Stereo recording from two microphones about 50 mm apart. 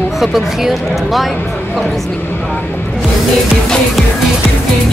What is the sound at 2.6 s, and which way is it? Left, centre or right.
Music, left.